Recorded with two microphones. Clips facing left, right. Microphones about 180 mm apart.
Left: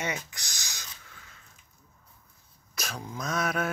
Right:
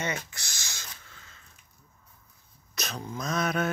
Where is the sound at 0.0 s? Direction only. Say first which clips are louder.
Right 1 dB; 15° left (ahead or behind).